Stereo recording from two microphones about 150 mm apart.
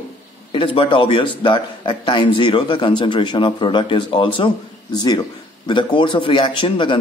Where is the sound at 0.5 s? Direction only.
35° left (ahead or behind).